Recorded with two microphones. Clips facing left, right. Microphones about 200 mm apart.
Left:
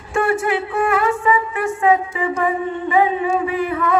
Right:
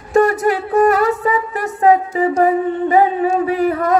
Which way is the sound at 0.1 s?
40° right (ahead or behind).